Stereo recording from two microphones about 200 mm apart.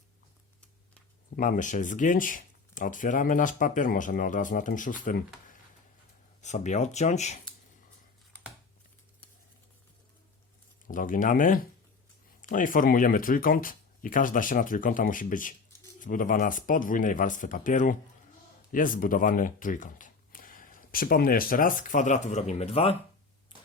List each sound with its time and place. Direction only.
1.4 s speech: 40° left (ahead or behind)
6.4 s speech: 35° left (ahead or behind)
10.8 s speech: 40° left (ahead or behind)